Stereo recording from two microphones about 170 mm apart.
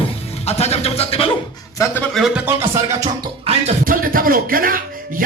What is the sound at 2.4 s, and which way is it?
Music, 15° right (ahead or behind).